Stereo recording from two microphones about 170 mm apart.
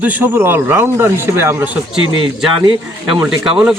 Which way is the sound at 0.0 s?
10° right (ahead or behind).